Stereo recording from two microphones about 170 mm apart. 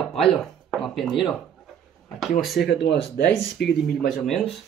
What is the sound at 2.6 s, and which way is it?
Speech, 90° left.